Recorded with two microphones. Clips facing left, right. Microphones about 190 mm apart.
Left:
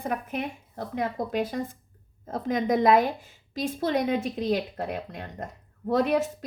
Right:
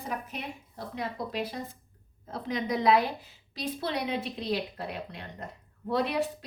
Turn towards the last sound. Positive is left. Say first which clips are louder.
# left 5 dB
turn(degrees=45)  # may be behind; listen again after turning